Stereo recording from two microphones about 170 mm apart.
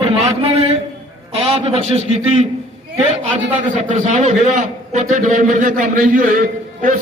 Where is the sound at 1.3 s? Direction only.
35° right (ahead or behind).